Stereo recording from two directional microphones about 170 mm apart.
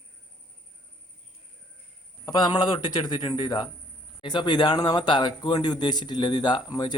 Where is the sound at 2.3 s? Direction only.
25° left (ahead or behind).